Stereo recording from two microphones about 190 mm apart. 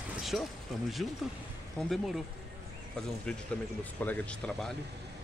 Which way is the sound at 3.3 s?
5° left (ahead or behind).